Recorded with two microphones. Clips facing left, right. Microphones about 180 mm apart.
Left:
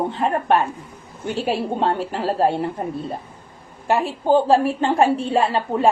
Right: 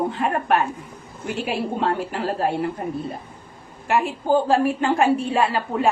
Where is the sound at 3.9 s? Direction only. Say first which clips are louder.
Left 2 dB; 30° left (ahead or behind).